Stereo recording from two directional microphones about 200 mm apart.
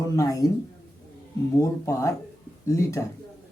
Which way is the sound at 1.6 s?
15° left (ahead or behind).